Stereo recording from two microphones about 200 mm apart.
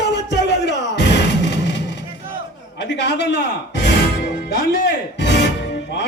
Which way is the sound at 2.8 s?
60° left (ahead or behind).